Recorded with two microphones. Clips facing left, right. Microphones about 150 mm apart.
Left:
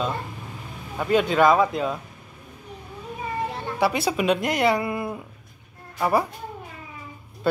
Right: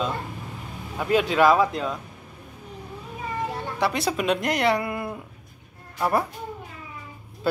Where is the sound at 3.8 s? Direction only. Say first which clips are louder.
Left 2 dB; 5° left (ahead or behind).